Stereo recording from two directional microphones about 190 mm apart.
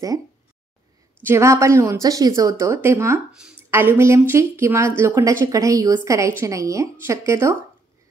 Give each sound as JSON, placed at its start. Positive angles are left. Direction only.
{"t": 1.2, "sound": "speech", "side_deg": -15}